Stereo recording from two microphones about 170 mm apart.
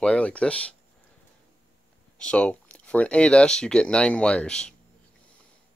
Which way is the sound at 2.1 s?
5° left (ahead or behind).